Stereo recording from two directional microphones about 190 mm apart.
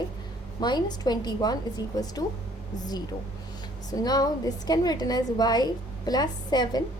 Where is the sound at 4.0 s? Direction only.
20° left (ahead or behind).